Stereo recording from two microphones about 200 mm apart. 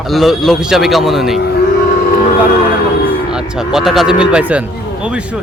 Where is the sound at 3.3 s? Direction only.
Centre (ahead or behind).